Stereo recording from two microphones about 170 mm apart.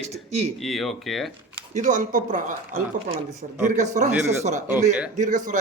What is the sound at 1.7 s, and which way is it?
Speech, 50° right (ahead or behind).